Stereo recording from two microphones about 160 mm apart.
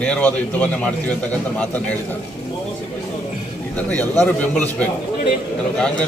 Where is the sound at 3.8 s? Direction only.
10° left (ahead or behind).